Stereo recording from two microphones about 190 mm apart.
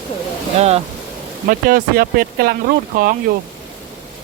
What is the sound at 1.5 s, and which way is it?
Speech, 50° right (ahead or behind).